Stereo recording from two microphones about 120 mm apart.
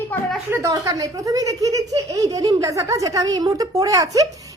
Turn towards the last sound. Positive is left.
turn(degrees=-30)  # may be behind; listen again after turning